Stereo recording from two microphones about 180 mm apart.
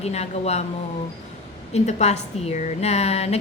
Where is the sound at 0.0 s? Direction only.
35° left (ahead or behind).